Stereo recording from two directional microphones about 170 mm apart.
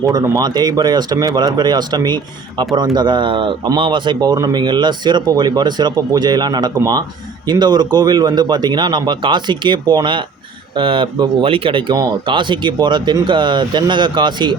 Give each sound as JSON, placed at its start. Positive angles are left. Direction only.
{"t": 0.1, "sound": "speech", "side_deg": -25}